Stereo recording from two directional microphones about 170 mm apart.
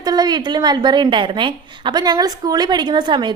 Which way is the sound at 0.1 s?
25° right (ahead or behind).